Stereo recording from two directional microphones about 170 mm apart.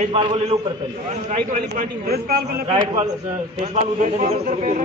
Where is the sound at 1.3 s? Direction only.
45° right (ahead or behind).